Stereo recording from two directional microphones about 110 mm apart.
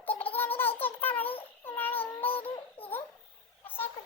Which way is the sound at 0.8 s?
15° left (ahead or behind).